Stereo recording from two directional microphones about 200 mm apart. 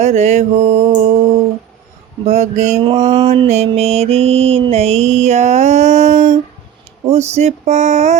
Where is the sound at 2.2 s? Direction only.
35° right (ahead or behind).